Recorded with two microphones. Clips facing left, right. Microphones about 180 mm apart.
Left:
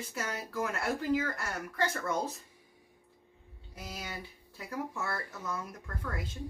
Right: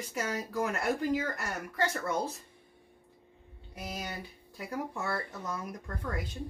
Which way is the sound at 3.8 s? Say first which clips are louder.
Right 3 dB; 20° right (ahead or behind).